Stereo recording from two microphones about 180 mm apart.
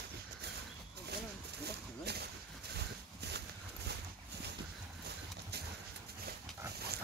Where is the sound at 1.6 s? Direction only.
65° right (ahead or behind).